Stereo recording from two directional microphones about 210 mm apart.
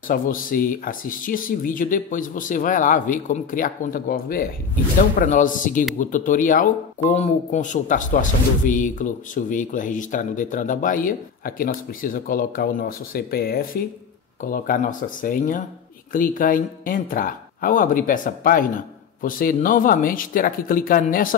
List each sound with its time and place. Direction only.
0.1 s speech: 40° left (ahead or behind)